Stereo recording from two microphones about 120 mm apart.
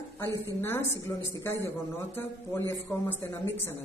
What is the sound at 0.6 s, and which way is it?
Speech, 20° left (ahead or behind).